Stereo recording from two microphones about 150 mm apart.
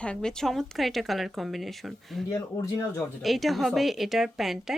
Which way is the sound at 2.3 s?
20° left (ahead or behind).